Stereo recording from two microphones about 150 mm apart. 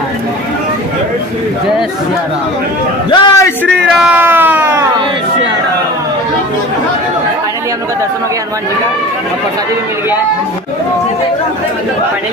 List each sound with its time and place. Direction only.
3.1 s a man's voice: 30° left (ahead or behind)
3.6 s speech: 5° right (ahead or behind)